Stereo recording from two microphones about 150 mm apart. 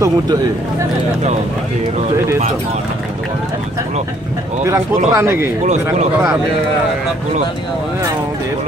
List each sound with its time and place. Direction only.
5.1 s speech: 15° right (ahead or behind)